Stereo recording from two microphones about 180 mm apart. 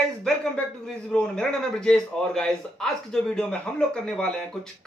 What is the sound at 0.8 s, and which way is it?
A man's voice, 5° left (ahead or behind).